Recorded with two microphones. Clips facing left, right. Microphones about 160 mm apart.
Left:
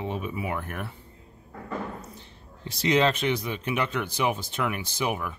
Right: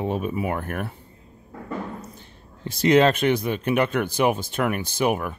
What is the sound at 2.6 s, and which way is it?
Speech, 50° right (ahead or behind).